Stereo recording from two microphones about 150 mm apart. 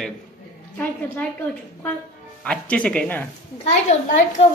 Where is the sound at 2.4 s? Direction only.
5° left (ahead or behind).